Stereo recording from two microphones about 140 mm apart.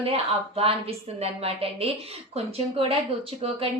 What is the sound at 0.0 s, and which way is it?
A woman's voice, 45° right (ahead or behind).